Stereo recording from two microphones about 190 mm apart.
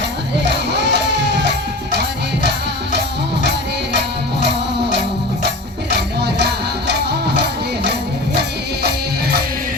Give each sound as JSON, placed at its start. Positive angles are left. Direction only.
{"t": 0.7, "sound": "music", "side_deg": -65}
{"t": 6.2, "sound": "music", "side_deg": -60}